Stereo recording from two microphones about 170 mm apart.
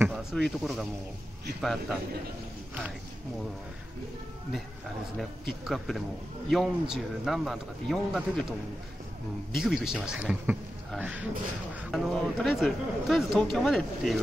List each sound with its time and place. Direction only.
0.1 s a man's voice: centre (ahead or behind)
5.5 s a man's voice: centre (ahead or behind)